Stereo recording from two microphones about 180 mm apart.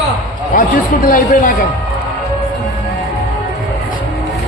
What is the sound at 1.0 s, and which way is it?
Speech, 50° left (ahead or behind).